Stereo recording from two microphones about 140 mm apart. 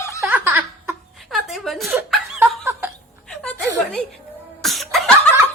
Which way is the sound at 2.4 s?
15° right (ahead or behind).